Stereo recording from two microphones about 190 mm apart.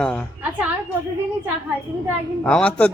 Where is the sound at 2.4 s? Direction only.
5° left (ahead or behind).